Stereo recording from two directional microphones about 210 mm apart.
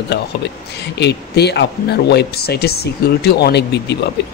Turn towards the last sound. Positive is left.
turn(degrees=55)  # may be behind; listen again after turning